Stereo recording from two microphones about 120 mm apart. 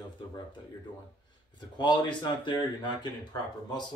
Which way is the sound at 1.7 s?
40° left (ahead or behind).